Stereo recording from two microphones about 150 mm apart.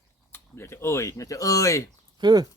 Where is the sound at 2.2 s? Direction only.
25° right (ahead or behind).